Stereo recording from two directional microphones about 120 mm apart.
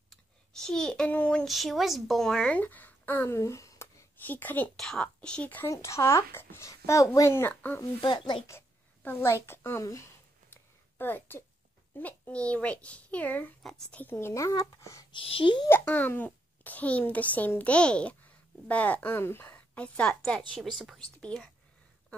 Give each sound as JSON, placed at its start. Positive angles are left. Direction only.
{"t": 0.1, "sound": "a child's voice", "side_deg": 5}
{"t": 5.7, "sound": "a child's voice", "side_deg": 25}
{"t": 7.8, "sound": "speech", "side_deg": 40}
{"t": 8.5, "sound": "a woman's voice", "side_deg": 20}
{"t": 10.5, "sound": "a sound", "side_deg": 15}
{"t": 12.0, "sound": "a child's voice", "side_deg": 10}
{"t": 14.0, "sound": "a child's voice", "side_deg": 20}
{"t": 15.1, "sound": "speech", "side_deg": 50}
{"t": 15.7, "sound": "a child's voice", "side_deg": 15}